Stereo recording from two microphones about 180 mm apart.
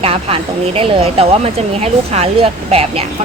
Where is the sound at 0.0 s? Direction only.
30° right (ahead or behind).